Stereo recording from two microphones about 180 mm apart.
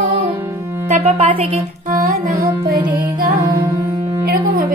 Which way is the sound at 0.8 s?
35° right (ahead or behind).